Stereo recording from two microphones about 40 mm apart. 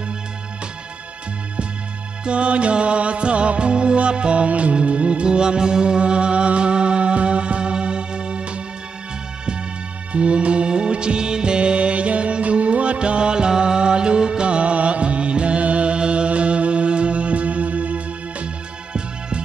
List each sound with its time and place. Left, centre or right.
2.2 s music: right
10.1 s music: right